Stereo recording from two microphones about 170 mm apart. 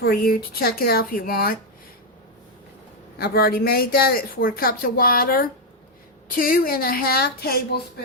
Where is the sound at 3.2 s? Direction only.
65° left (ahead or behind).